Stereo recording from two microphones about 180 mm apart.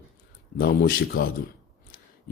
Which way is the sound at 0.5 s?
55° left (ahead or behind).